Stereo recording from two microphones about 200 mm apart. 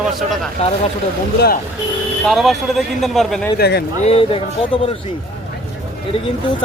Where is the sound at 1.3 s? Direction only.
50° left (ahead or behind).